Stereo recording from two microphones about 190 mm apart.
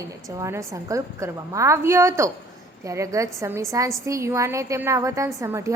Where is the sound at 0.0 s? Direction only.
15° right (ahead or behind).